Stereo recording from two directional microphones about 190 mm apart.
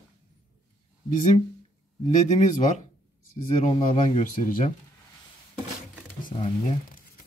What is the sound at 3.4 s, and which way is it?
A man's voice, 30° left (ahead or behind).